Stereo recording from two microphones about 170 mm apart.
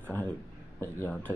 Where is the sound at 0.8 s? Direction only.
15° left (ahead or behind).